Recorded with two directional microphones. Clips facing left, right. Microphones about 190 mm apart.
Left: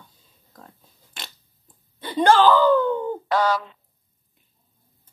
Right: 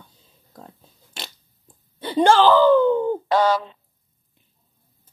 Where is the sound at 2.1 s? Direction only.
25° right (ahead or behind).